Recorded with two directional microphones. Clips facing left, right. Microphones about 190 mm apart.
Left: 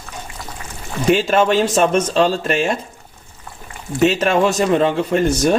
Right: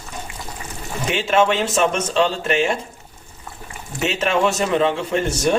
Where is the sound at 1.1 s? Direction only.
40° left (ahead or behind).